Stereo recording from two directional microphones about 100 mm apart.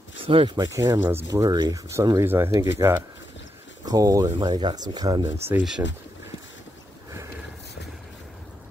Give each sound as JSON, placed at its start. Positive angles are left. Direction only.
{"t": 0.2, "sound": "a sound", "side_deg": -65}
{"t": 0.6, "sound": "speech", "side_deg": -35}
{"t": 1.4, "sound": "speech", "side_deg": -40}
{"t": 2.1, "sound": "speech", "side_deg": -25}
{"t": 4.4, "sound": "speech", "side_deg": -45}
{"t": 5.6, "sound": "speech", "side_deg": -5}